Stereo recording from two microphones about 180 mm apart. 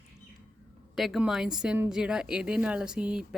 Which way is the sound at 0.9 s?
Centre (ahead or behind).